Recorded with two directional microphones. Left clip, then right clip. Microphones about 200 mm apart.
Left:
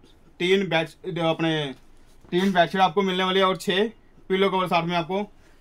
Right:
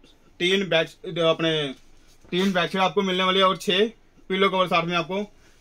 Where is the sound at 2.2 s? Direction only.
40° left (ahead or behind).